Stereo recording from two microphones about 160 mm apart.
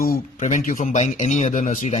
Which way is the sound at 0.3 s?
50° left (ahead or behind).